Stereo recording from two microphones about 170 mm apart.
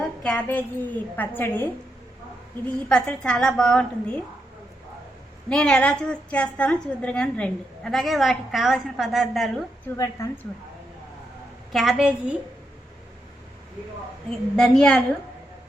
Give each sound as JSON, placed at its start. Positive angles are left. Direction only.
{"t": 0.2, "sound": "a woman's voice", "side_deg": 5}
{"t": 5.5, "sound": "a woman's voice", "side_deg": 5}
{"t": 10.0, "sound": "a woman's voice", "side_deg": 20}
{"t": 11.7, "sound": "a woman's voice", "side_deg": 0}
{"t": 14.5, "sound": "a woman's voice", "side_deg": 0}